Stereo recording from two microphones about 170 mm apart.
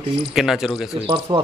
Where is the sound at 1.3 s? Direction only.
30° right (ahead or behind).